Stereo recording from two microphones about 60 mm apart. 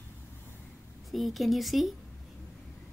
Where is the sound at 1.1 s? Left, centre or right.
Centre.